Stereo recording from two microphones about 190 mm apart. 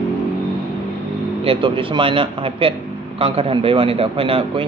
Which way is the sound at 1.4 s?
30° right (ahead or behind).